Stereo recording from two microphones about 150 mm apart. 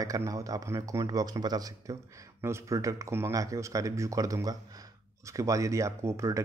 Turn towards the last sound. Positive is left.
turn(degrees=-20)  # may be behind; listen again after turning